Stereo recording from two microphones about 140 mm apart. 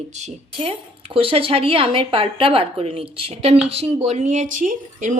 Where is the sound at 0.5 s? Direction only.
40° right (ahead or behind).